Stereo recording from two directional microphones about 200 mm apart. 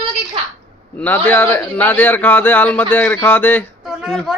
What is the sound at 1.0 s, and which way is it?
A man's voice, 10° left (ahead or behind).